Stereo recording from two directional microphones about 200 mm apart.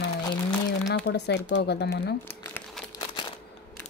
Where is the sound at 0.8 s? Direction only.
55° left (ahead or behind).